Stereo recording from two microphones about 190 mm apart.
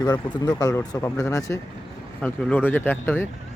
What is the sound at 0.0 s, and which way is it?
Speech, 20° left (ahead or behind).